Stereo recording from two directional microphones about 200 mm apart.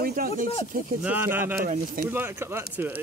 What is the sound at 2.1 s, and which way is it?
Speech, 10° right (ahead or behind).